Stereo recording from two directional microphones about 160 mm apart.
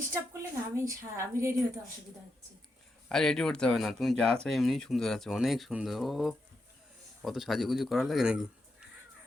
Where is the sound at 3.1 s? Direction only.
5° left (ahead or behind).